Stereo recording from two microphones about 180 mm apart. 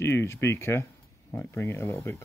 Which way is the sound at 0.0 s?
15° left (ahead or behind).